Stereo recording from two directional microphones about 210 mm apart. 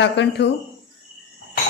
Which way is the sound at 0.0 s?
55° left (ahead or behind).